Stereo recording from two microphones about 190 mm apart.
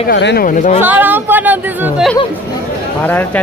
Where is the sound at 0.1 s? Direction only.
65° left (ahead or behind).